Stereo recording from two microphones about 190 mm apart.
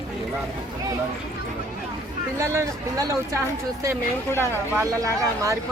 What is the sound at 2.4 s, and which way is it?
Speech, 15° right (ahead or behind).